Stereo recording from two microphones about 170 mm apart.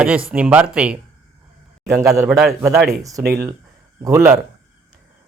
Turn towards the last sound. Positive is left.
turn(degrees=-15)  # may be behind; listen again after turning